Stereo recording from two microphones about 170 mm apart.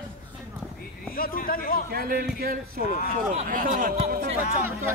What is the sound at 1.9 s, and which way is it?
A man's voice, 60° right (ahead or behind).